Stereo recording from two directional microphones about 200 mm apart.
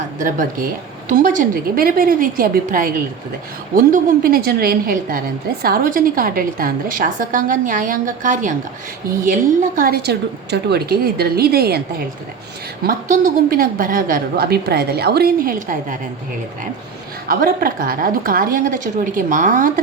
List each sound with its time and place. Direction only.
0.2 s a woman's voice: 40° right (ahead or behind)
12.8 s a woman's voice: 45° right (ahead or behind)
17.2 s a woman's voice: 45° right (ahead or behind)